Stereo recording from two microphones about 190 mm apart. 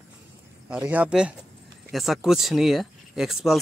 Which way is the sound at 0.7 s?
5° right (ahead or behind).